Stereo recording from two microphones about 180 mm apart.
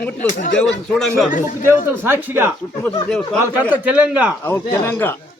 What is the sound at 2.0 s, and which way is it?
Speech, 10° right (ahead or behind).